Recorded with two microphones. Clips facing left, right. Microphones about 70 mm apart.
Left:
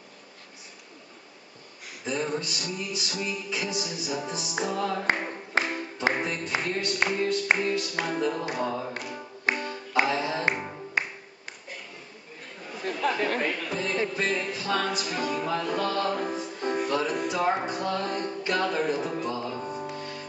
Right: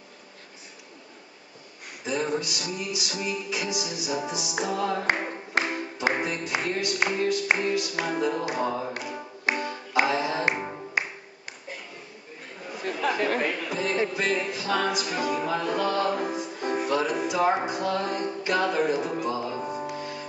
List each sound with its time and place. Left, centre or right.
2.0 s music: centre
12.6 s speech: centre